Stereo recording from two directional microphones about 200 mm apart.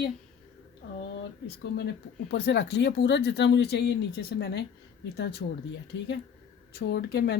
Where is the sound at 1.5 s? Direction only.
55° left (ahead or behind).